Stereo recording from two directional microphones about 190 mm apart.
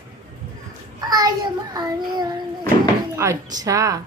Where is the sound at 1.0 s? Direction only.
20° right (ahead or behind).